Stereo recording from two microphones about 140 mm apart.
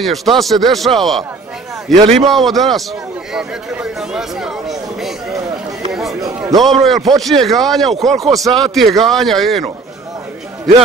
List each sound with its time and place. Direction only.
0.0 s a man's voice: centre (ahead or behind)
1.9 s a man's voice: 50° right (ahead or behind)
2.2 s a man's voice: centre (ahead or behind)
3.3 s chatter: 5° right (ahead or behind)
5.9 s a sound: centre (ahead or behind)
6.5 s a man's voice: centre (ahead or behind)